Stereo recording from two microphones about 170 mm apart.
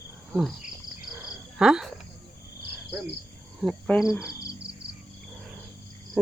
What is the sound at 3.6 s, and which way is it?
Cricket, centre (ahead or behind).